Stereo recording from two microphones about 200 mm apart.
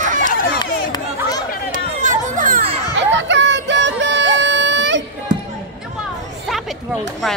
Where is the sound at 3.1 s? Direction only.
65° right (ahead or behind).